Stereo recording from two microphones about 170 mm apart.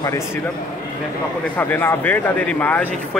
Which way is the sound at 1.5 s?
10° left (ahead or behind).